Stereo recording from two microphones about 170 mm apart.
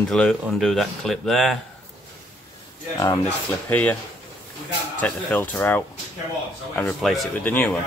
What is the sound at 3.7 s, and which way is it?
Speech, 10° left (ahead or behind).